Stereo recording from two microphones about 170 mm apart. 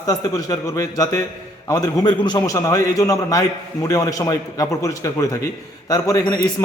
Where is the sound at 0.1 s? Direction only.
20° left (ahead or behind).